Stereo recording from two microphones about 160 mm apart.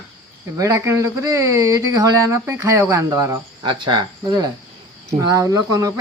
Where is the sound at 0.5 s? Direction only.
20° right (ahead or behind).